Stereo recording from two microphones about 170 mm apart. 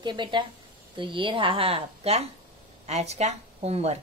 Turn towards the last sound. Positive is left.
turn(degrees=-35)  # may be behind; listen again after turning